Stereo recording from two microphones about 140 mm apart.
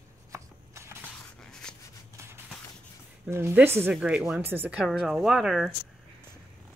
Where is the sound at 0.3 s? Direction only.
20° right (ahead or behind).